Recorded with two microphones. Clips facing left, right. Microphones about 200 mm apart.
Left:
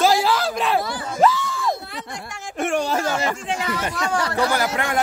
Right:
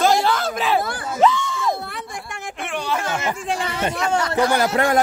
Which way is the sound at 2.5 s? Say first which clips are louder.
Left 5 dB; 45° left (ahead or behind).